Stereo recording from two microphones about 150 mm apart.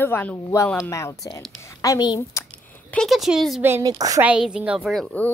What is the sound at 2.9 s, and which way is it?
Speech, centre (ahead or behind).